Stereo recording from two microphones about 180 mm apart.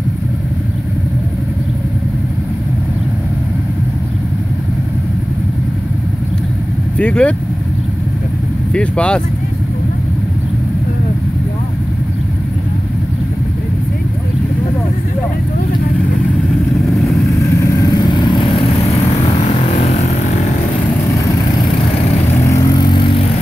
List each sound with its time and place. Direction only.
7.0 s speech: 5° left (ahead or behind)
8.7 s speech: 5° left (ahead or behind)
17.4 s vehicle: 15° left (ahead or behind); by 20.3 s 35° left (ahead or behind)
22.8 s vehicle: 25° left (ahead or behind)